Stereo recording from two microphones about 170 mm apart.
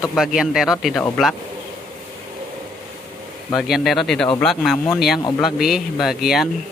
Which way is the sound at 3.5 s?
Centre (ahead or behind).